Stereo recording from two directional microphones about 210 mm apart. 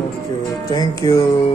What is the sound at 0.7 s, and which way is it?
Music, 20° left (ahead or behind).